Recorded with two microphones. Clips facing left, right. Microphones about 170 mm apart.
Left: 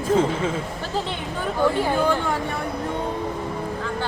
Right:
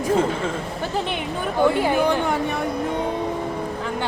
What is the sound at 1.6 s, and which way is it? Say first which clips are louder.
Speech: right 1 dB; 15° right (ahead or behind).